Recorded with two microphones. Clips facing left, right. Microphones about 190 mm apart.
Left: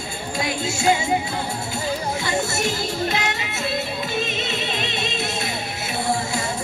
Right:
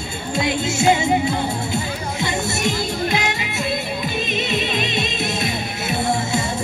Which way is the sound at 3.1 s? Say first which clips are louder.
Right 3 dB; 15° right (ahead or behind).